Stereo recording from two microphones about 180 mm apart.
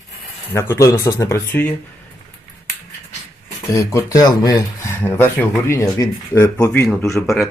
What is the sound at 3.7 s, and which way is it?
Speech, 15° left (ahead or behind).